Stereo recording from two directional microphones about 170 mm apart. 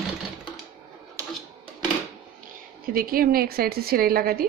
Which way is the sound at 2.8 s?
60° right (ahead or behind).